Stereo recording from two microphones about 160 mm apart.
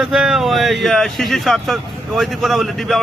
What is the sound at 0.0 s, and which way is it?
Speech, 5° right (ahead or behind).